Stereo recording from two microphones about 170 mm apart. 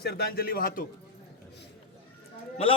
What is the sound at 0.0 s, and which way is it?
Speech, 65° left (ahead or behind).